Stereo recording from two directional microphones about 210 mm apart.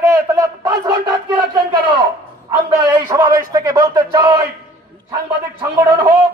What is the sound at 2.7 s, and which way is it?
Speech, 20° right (ahead or behind).